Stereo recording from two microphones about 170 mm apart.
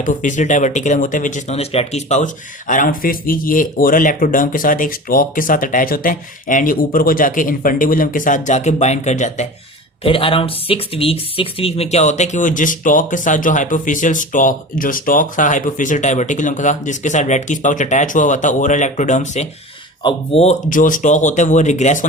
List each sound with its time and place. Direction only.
0.0 s speech: 50° left (ahead or behind)
10.0 s speech: 30° left (ahead or behind)
20.0 s speech: 30° left (ahead or behind)